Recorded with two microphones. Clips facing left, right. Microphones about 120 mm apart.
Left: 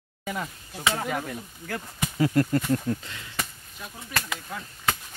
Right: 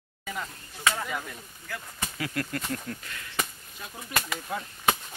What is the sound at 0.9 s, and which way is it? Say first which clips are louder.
Speech: left 4 dB; 50° left (ahead or behind).